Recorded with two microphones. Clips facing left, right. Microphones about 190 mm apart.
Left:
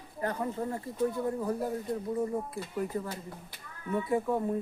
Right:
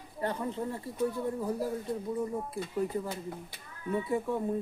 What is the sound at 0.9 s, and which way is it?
Speech, 25° left (ahead or behind).